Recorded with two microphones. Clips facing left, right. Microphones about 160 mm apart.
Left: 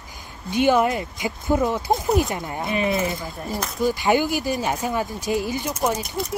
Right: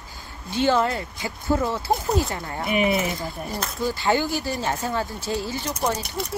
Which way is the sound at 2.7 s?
15° right (ahead or behind).